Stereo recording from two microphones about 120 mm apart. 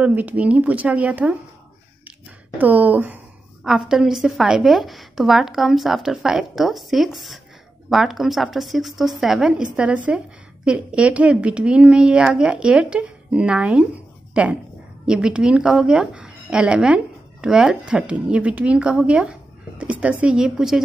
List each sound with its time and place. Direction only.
0.0 s speech: 15° right (ahead or behind)
2.6 s a woman's voice: 15° right (ahead or behind)